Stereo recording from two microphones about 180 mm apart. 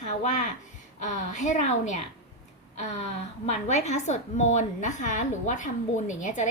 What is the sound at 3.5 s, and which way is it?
A woman's voice, 40° left (ahead or behind).